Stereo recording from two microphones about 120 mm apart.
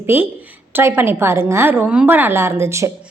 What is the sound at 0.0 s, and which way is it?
A woman's voice, 15° right (ahead or behind).